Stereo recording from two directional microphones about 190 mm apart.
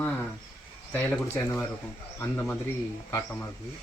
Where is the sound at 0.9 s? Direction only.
10° left (ahead or behind).